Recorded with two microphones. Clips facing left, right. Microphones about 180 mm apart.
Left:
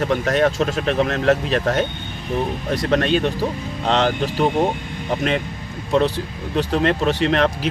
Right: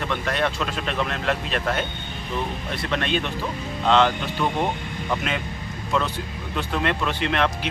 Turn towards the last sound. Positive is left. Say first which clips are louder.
# left 5 dB
turn(degrees=40)  # may be behind; listen again after turning